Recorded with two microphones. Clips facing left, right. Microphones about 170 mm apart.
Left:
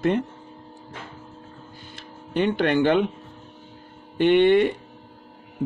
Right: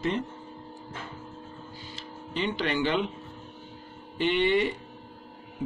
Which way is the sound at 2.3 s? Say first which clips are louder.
Left 8 dB; 55° left (ahead or behind).